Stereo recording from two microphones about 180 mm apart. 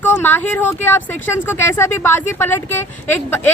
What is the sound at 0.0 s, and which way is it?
Speech, 10° left (ahead or behind).